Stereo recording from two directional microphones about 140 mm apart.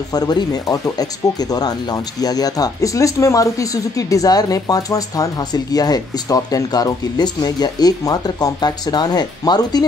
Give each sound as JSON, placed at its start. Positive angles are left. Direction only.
{"t": 0.1, "sound": "speech", "side_deg": 30}
{"t": 2.2, "sound": "speech", "side_deg": 25}